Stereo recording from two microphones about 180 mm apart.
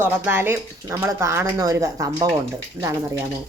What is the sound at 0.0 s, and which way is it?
Speech, 10° right (ahead or behind).